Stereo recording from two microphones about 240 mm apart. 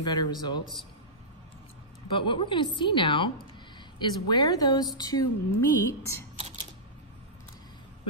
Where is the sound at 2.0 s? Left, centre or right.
Left.